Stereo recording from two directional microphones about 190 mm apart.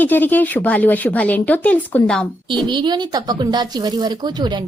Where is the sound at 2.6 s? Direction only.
25° right (ahead or behind).